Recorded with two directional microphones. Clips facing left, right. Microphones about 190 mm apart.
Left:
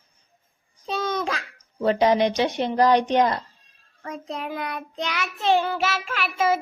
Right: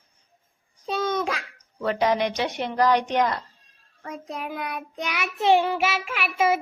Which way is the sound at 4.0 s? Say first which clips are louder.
Left 2 dB; 5° right (ahead or behind).